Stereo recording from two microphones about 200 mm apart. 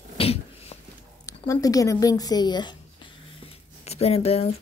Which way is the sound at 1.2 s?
15° left (ahead or behind).